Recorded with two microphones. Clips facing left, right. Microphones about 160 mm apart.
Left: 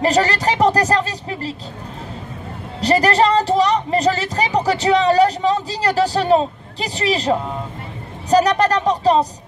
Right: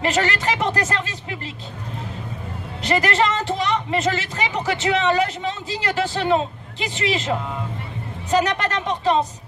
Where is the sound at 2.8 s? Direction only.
35° left (ahead or behind).